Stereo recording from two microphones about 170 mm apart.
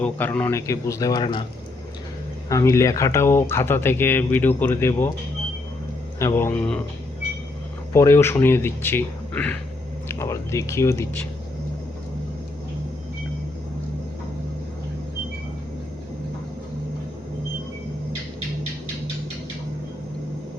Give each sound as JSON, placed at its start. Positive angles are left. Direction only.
{"t": 0.0, "sound": "speech", "side_deg": 10}
{"t": 2.5, "sound": "speech", "side_deg": 20}
{"t": 6.1, "sound": "speech", "side_deg": 15}
{"t": 7.9, "sound": "speech", "side_deg": 15}